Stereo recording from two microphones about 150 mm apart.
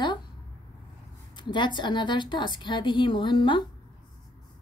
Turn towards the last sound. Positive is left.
turn(degrees=30)  # may be behind; listen again after turning